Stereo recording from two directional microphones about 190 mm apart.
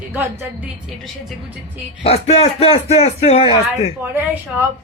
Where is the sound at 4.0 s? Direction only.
10° right (ahead or behind).